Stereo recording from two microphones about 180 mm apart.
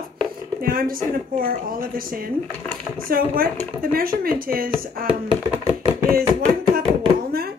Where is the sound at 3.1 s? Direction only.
55° right (ahead or behind).